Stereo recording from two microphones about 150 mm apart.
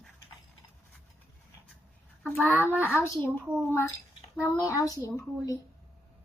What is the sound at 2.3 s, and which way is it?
A child's voice, 10° left (ahead or behind).